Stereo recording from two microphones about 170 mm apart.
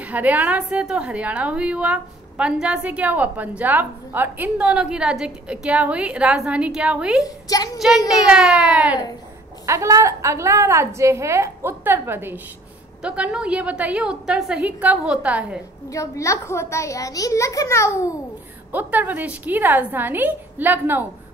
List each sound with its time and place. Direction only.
0.0 s a woman's voice: 10° right (ahead or behind)
7.2 s a woman's voice: 20° left (ahead or behind)
8.1 s speech: 5° right (ahead or behind)
9.7 s a woman's voice: 15° right (ahead or behind)
15.9 s a child's voice: 20° left (ahead or behind)
18.7 s a woman's voice: 10° right (ahead or behind)